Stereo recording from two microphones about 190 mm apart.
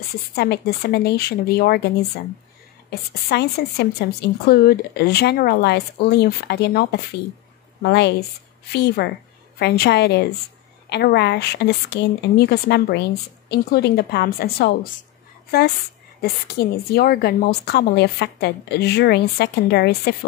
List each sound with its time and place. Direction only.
0.3 s a woman's voice: 55° left (ahead or behind)
2.9 s a woman's voice: 55° left (ahead or behind)